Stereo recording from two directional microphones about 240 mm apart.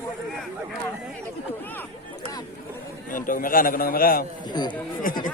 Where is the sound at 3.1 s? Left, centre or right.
Left.